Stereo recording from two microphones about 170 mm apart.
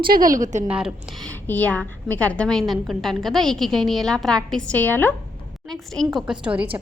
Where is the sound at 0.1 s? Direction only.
55° right (ahead or behind).